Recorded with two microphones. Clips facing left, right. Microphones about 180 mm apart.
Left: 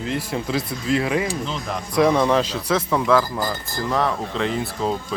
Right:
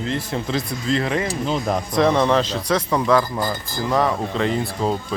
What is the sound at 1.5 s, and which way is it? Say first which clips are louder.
Speech: right 6 dB; 40° right (ahead or behind).